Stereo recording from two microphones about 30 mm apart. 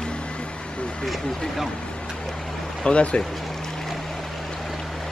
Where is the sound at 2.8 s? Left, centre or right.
Left.